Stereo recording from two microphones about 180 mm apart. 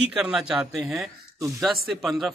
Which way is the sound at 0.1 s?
5° right (ahead or behind).